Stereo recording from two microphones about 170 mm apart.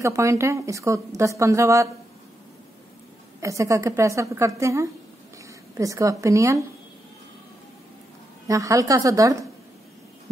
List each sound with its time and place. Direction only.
0.0 s speech: 15° right (ahead or behind)
3.3 s a woman's voice: 15° right (ahead or behind)
8.5 s a woman's voice: 20° right (ahead or behind)